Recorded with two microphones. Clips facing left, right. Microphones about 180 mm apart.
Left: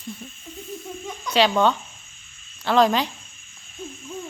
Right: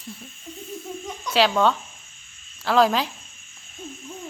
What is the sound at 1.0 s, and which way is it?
Cricket, centre (ahead or behind).